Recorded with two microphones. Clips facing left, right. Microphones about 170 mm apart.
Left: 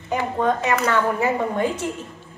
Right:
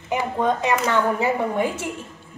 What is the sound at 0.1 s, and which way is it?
A woman's voice, 10° right (ahead or behind).